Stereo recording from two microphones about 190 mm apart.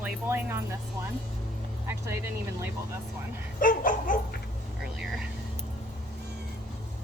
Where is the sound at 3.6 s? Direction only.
45° left (ahead or behind).